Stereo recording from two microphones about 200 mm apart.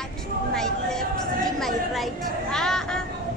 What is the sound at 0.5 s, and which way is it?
A woman's voice, 5° left (ahead or behind).